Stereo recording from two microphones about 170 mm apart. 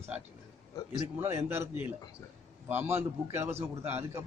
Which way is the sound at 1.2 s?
15° right (ahead or behind).